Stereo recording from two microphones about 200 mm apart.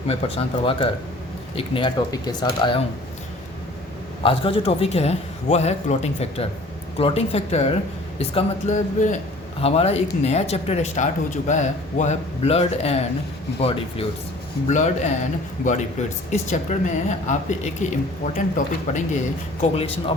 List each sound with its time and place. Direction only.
0.1 s a man's voice: 25° left (ahead or behind)
4.2 s a man's voice: 25° left (ahead or behind)
14.7 s a man's voice: 35° left (ahead or behind)